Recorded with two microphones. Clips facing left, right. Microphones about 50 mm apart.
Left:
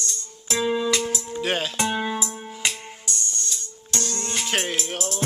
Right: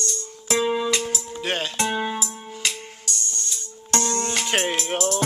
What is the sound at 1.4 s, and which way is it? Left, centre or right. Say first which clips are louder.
Speech: even; centre.